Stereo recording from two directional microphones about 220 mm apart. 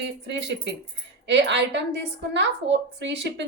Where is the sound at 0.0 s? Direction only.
50° right (ahead or behind).